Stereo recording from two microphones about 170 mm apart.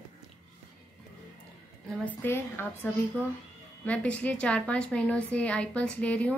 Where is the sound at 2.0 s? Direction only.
15° left (ahead or behind).